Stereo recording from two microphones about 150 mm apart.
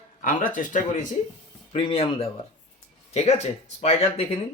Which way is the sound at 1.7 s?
40° left (ahead or behind).